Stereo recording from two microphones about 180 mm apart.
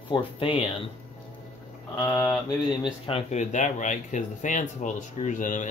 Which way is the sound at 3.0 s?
35° left (ahead or behind).